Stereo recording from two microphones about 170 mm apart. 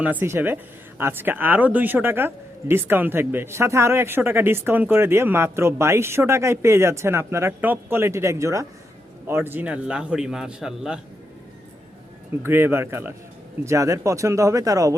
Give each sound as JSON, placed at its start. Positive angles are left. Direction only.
{"t": 0.0, "sound": "a man's voice", "side_deg": -10}
{"t": 12.4, "sound": "speech", "side_deg": -15}